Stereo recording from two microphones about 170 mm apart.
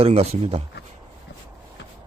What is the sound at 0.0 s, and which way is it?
Speech, 35° right (ahead or behind).